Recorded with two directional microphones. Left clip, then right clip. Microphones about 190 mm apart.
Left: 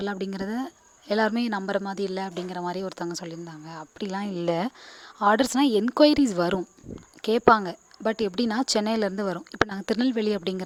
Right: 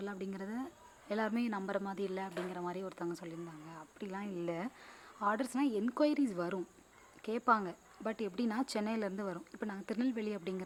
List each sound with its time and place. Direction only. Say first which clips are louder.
0.0 s speech: left 12 dB; 45° left (ahead or behind)